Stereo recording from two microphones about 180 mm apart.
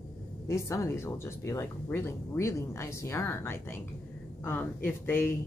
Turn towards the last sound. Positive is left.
turn(degrees=10)  # may be behind; listen again after turning